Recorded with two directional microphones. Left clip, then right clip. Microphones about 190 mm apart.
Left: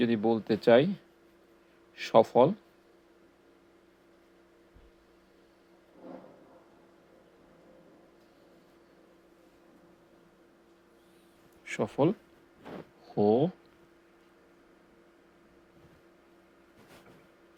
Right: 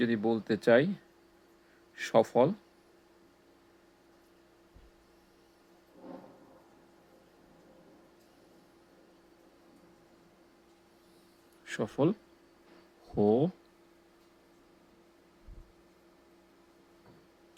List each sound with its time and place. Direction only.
0.0 s speech: 5° right (ahead or behind)
2.0 s speech: 5° right (ahead or behind)
11.6 s speech: 10° right (ahead or behind)
13.1 s speech: 25° right (ahead or behind)